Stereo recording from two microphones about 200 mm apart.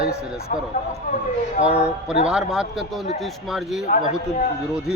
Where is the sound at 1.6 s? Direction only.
5° right (ahead or behind).